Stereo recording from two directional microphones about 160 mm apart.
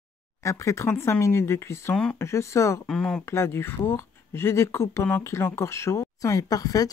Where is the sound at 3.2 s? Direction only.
15° left (ahead or behind).